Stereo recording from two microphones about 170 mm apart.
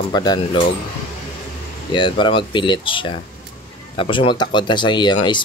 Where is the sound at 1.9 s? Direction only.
30° left (ahead or behind).